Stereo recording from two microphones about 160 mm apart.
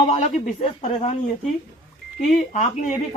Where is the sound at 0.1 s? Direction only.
50° left (ahead or behind).